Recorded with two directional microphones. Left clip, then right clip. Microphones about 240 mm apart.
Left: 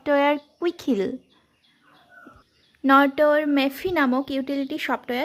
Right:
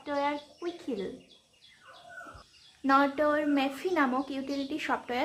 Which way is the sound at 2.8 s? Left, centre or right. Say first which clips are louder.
Left 8 dB; left.